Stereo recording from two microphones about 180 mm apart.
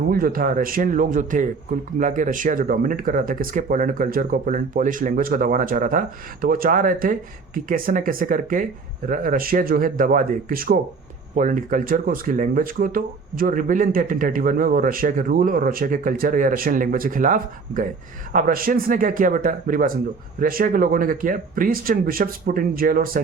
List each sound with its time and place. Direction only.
0.1 s speech: 50° right (ahead or behind)